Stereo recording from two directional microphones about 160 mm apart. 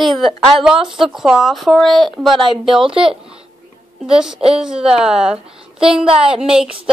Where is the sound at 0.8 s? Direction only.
Centre (ahead or behind).